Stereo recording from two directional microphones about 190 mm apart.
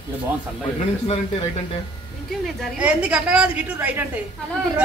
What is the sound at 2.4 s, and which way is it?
A woman's voice, 5° right (ahead or behind).